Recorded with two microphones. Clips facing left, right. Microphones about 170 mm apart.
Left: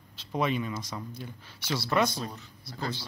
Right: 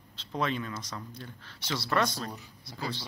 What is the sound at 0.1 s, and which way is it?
Speech, 10° left (ahead or behind).